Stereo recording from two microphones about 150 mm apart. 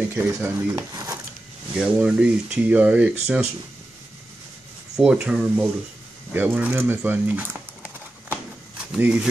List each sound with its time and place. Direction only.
0.1 s speech: 15° right (ahead or behind)
1.8 s speech: 5° right (ahead or behind)
4.9 s speech: 5° right (ahead or behind)
8.9 s speech: 10° right (ahead or behind)